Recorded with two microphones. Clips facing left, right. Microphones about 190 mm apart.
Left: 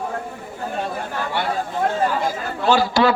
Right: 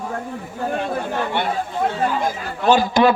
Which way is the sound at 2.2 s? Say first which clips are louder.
Right 2 dB; 20° right (ahead or behind).